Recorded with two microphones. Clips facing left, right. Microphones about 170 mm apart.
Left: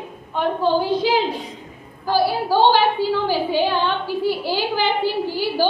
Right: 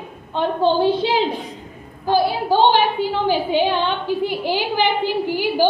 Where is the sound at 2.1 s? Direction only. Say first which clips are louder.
Right 1 dB; 20° right (ahead or behind).